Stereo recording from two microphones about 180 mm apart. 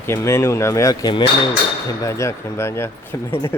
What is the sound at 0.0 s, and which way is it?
Speech, 15° left (ahead or behind).